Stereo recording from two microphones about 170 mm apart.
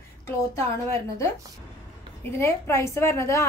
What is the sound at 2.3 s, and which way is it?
Speech, 15° left (ahead or behind).